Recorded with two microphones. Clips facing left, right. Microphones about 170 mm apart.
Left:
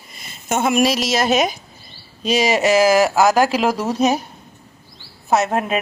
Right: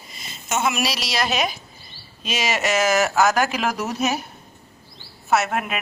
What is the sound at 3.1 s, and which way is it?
Speech, 15° left (ahead or behind).